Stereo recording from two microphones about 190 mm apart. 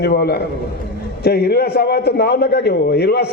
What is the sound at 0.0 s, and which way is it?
A man's voice, 60° left (ahead or behind).